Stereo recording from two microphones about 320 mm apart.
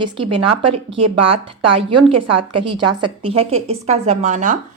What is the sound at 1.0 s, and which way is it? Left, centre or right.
A woman's voice, right.